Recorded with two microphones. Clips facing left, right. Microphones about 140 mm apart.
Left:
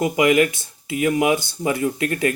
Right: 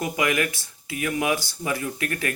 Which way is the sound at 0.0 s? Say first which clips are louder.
Left 8 dB; 25° left (ahead or behind).